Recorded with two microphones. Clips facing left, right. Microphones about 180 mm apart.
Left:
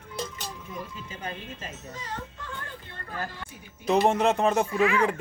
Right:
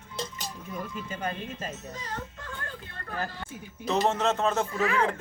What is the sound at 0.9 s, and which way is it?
Speech, 50° right (ahead or behind).